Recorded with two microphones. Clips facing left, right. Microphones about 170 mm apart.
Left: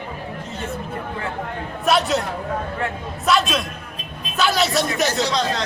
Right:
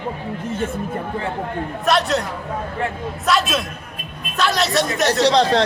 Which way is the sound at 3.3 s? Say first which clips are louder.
Even; centre (ahead or behind).